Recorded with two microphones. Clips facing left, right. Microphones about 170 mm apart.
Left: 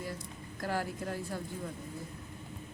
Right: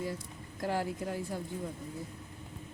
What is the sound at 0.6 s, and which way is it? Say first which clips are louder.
Speech: right 2 dB; 20° right (ahead or behind).